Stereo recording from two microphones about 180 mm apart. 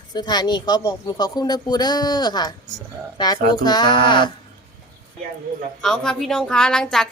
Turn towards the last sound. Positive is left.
turn(degrees=5)  # may be behind; listen again after turning